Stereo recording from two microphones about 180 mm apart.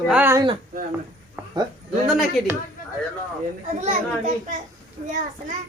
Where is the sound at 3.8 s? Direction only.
45° right (ahead or behind).